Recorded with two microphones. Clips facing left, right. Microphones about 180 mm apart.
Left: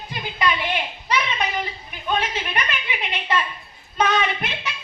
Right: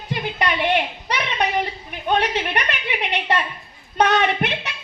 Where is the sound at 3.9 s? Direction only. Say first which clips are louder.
Right 3 dB; 65° right (ahead or behind).